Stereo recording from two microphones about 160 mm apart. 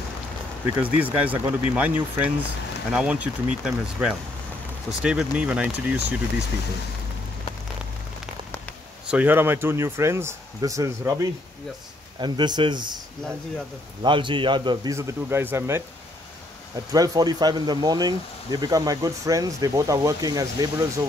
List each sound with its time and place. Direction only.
0.8 s speech: 10° right (ahead or behind)
9.0 s speech: 10° right (ahead or behind); by 13.0 s 30° right (ahead or behind)
14.0 s speech: 30° right (ahead or behind)
15.0 s speech: 15° right (ahead or behind)
16.9 s speech: 25° right (ahead or behind)